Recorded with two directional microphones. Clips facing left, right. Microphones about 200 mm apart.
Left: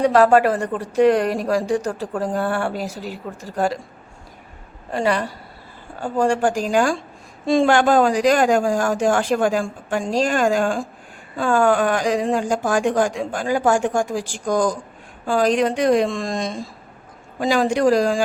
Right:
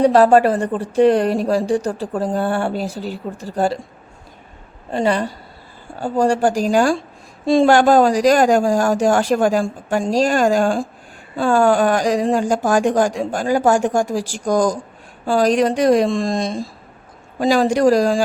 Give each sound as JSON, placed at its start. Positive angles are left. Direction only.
{"t": 0.0, "sound": "speech", "side_deg": -30}
{"t": 4.9, "sound": "speech", "side_deg": -25}
{"t": 6.0, "sound": "a woman's voice", "side_deg": -35}